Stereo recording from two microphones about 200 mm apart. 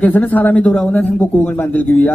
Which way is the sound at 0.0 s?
10° left (ahead or behind).